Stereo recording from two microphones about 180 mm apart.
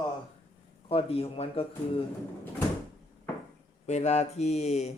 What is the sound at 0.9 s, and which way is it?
Speech, 30° left (ahead or behind).